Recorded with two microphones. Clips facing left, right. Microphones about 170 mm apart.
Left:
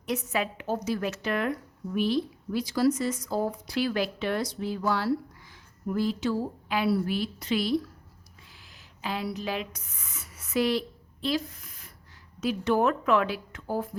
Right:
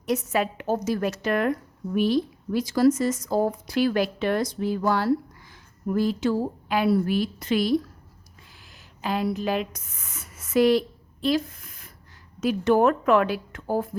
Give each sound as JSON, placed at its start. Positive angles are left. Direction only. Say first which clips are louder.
{"t": 0.3, "sound": "a woman's voice", "louder": "right 5 dB", "side_deg": -45}